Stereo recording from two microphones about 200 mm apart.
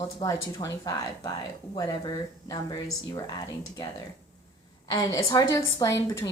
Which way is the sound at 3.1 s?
20° left (ahead or behind).